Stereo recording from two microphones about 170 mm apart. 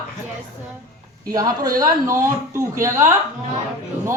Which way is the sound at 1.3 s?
20° right (ahead or behind).